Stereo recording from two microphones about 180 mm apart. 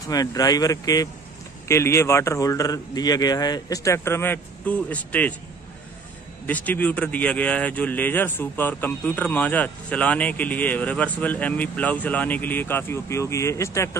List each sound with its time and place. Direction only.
0.0 s speech: 20° left (ahead or behind)
6.4 s speech: 10° left (ahead or behind)